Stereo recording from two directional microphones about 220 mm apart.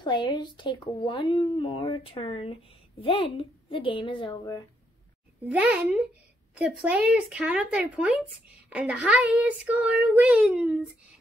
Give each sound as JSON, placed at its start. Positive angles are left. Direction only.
{"t": 0.0, "sound": "speech", "side_deg": 20}
{"t": 5.5, "sound": "speech", "side_deg": -5}